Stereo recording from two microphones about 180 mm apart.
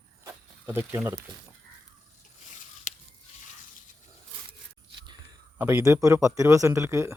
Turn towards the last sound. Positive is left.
turn(degrees=-15)  # may be behind; listen again after turning